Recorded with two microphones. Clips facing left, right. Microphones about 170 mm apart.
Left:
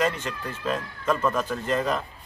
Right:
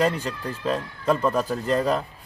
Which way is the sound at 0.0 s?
35° right (ahead or behind).